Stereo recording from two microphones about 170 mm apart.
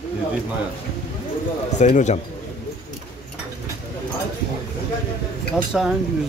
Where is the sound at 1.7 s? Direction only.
45° left (ahead or behind).